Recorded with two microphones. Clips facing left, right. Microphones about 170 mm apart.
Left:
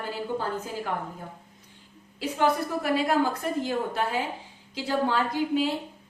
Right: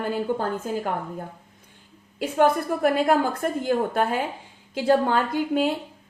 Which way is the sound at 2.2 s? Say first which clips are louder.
Right 4 dB; 55° right (ahead or behind).